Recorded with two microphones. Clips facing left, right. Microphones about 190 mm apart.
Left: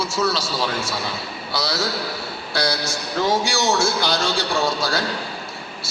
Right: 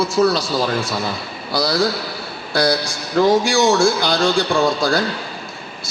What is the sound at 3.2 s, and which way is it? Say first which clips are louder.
A man's voice: right 7 dB; 55° right (ahead or behind).